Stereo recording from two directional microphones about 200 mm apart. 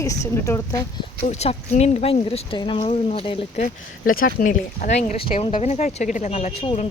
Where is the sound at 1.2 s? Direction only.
30° left (ahead or behind).